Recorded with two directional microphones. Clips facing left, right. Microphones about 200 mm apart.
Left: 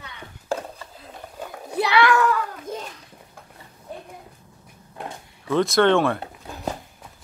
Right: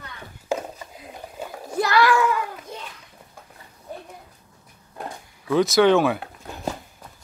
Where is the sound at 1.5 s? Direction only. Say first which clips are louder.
Even; centre (ahead or behind).